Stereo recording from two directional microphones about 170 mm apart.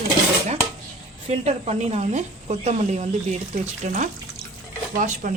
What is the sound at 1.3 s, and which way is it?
A woman's voice, 40° right (ahead or behind).